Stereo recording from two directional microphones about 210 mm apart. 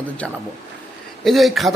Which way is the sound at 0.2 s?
5° left (ahead or behind).